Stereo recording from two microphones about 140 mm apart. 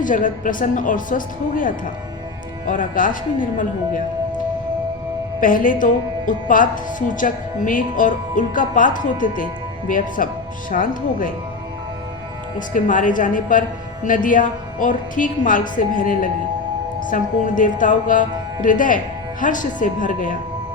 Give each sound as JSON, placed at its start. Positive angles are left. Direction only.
{"t": 0.0, "sound": "a woman's voice", "side_deg": 70}
{"t": 5.4, "sound": "a woman's voice", "side_deg": 80}
{"t": 12.5, "sound": "a woman's voice", "side_deg": 70}